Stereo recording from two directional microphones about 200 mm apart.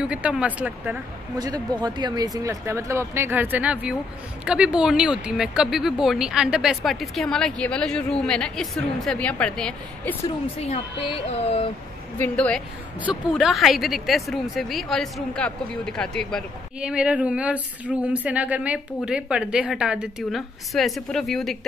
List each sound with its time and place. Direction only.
0.0 s a woman's voice: 5° right (ahead or behind)
1.4 s a woman's voice: 20° right (ahead or behind); by 10.1 s 5° left (ahead or behind)
10.4 s speech: 30° left (ahead or behind)
12.2 s a woman's voice: 5° left (ahead or behind)